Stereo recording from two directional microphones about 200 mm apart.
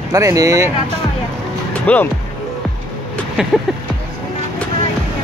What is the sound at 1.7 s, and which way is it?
Music, 5° left (ahead or behind).